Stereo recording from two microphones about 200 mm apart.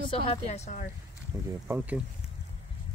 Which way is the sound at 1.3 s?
15° right (ahead or behind).